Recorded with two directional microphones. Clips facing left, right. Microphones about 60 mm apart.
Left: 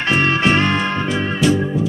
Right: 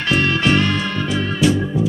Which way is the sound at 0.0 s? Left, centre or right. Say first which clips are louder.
Left 1 dB; left.